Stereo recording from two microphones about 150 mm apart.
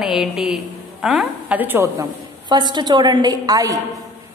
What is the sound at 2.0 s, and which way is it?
A woman's voice, 30° right (ahead or behind).